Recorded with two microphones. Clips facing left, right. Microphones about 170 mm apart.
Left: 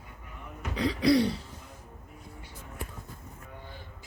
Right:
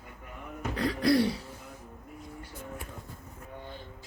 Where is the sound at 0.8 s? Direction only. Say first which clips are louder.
Left 1 dB; centre (ahead or behind).